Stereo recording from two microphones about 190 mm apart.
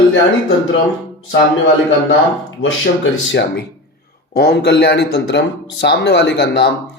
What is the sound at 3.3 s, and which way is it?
A man's voice, 65° left (ahead or behind).